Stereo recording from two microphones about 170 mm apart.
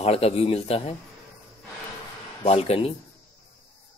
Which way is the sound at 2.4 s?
35° left (ahead or behind).